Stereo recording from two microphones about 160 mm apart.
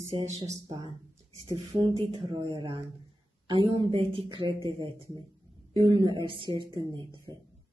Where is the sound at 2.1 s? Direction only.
30° right (ahead or behind).